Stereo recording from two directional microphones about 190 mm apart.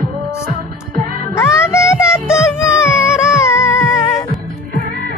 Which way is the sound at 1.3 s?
15° left (ahead or behind).